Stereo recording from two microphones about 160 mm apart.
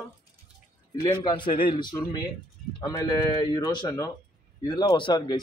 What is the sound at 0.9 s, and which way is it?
Speech, 25° left (ahead or behind).